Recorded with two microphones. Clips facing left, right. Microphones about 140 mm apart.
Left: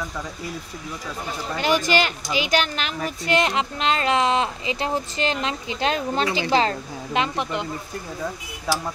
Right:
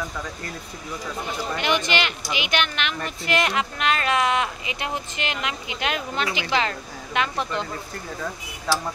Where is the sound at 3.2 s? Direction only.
25° left (ahead or behind).